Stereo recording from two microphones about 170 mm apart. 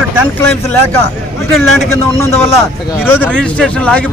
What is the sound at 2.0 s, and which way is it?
Speech, 15° left (ahead or behind).